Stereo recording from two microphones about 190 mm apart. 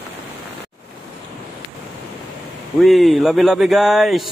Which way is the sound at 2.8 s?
Centre (ahead or behind).